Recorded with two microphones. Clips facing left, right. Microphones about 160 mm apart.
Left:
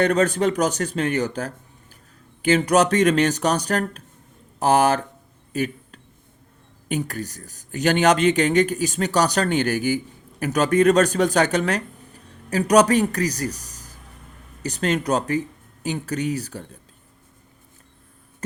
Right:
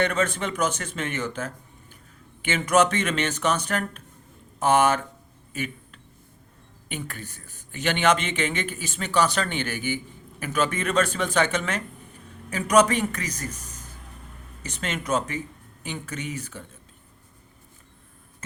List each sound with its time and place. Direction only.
0.0 s speech: 35° left (ahead or behind)
5.5 s a sound: 40° left (ahead or behind)
6.8 s speech: 40° left (ahead or behind)